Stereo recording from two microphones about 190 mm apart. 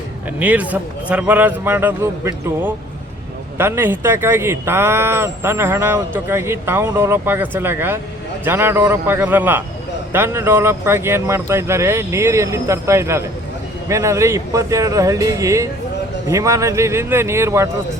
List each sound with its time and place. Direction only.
0.3 s speech: 10° right (ahead or behind)